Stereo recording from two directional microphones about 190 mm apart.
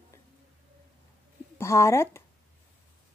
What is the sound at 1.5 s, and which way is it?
Speech, 15° left (ahead or behind).